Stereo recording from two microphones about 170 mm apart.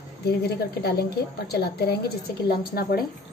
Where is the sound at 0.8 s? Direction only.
65° left (ahead or behind).